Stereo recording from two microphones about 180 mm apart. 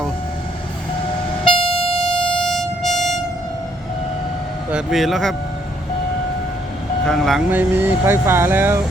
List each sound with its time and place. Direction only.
1.5 s train: 30° left (ahead or behind)
2.4 s train: centre (ahead or behind)
4.7 s a man's voice: centre (ahead or behind)
7.0 s speech: centre (ahead or behind)
7.5 s speech: 10° right (ahead or behind)